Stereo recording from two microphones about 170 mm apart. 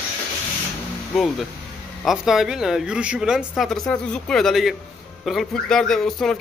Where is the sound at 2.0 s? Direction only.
Centre (ahead or behind).